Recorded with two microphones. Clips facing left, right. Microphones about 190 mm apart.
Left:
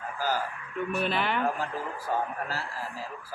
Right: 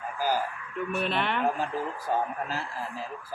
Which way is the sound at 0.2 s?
15° right (ahead or behind).